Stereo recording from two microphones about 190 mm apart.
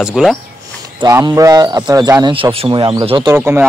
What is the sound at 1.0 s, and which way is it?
A man's voice, 20° right (ahead or behind).